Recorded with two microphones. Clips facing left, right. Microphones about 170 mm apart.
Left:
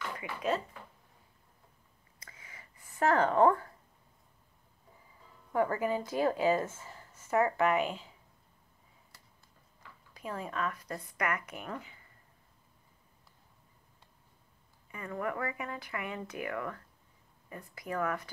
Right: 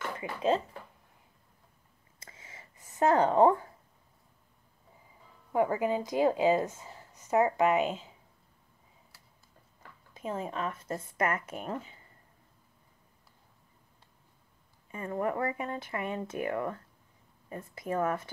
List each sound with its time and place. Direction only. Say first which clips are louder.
0.2 s speech: right 5 dB; 30° right (ahead or behind)
2.1 s a sound: right 2 dB; 25° right (ahead or behind)
5.5 s a woman's voice: right 2 dB; 15° right (ahead or behind)
9.1 s tick-tock: even; 5° right (ahead or behind)
10.1 s speech: right 3 dB; 25° right (ahead or behind)
14.9 s speech: right 4 dB; 25° right (ahead or behind)